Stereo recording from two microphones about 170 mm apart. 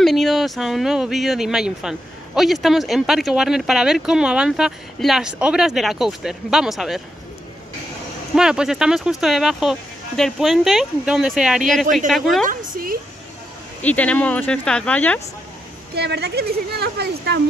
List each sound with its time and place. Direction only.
0.0 s speech: centre (ahead or behind)
8.4 s speech: 5° right (ahead or behind)
12.4 s a woman's voice: 55° right (ahead or behind)
13.8 s speech: 10° left (ahead or behind)
15.9 s speech: 75° right (ahead or behind)